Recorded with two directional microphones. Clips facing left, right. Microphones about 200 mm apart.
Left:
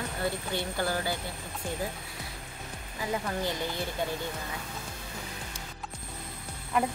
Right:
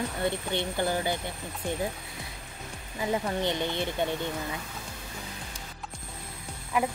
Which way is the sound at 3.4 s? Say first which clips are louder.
Right 3 dB; 25° right (ahead or behind).